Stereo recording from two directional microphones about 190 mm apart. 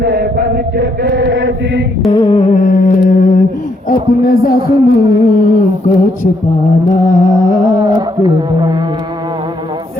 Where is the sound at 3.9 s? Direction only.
50° left (ahead or behind).